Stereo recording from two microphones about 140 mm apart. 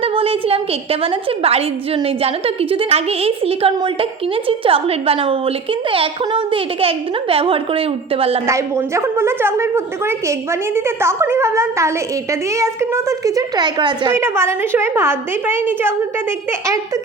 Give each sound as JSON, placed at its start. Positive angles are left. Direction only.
{"t": 0.0, "sound": "a woman's voice", "side_deg": -40}
{"t": 8.4, "sound": "a woman's voice", "side_deg": -20}
{"t": 14.1, "sound": "a woman's voice", "side_deg": -15}